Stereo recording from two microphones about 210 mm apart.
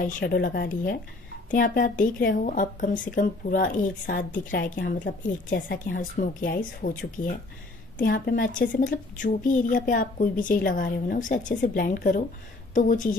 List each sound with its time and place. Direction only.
0.0 s a woman's voice: 45° left (ahead or behind)